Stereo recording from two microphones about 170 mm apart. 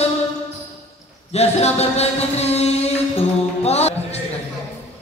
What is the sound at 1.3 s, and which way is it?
Speech, 40° left (ahead or behind).